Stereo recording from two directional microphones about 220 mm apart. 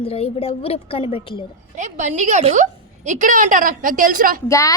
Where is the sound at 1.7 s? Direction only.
35° right (ahead or behind).